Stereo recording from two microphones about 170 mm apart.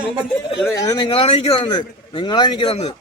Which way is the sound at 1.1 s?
35° left (ahead or behind).